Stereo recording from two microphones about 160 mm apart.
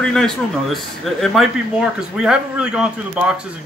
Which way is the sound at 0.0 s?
5° left (ahead or behind).